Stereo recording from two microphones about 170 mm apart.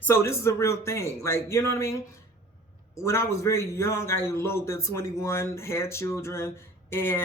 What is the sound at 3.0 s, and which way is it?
Speech, 15° left (ahead or behind).